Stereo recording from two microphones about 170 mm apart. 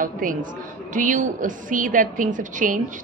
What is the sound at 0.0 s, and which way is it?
A woman's voice, 50° right (ahead or behind).